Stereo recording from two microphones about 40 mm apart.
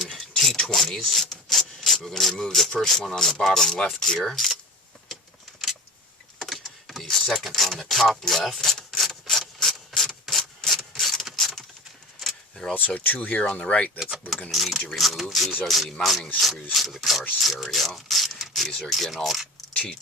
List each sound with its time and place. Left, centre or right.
0.0 s a sound: centre
1.5 s speech: centre
6.4 s vehicle: centre
7.3 s speech: centre
8.9 s rub: centre
11.3 s a sound: centre
12.2 s vehicle: centre
12.7 s speech: left
14.5 s speech: centre